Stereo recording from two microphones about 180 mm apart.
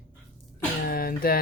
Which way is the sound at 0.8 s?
55° left (ahead or behind).